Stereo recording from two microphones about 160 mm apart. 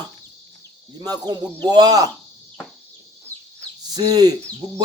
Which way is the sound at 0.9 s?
25° right (ahead or behind).